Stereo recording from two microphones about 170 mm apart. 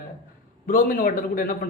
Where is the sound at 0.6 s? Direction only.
55° left (ahead or behind).